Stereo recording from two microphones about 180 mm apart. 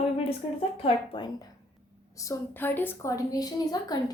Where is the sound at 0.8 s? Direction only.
30° left (ahead or behind).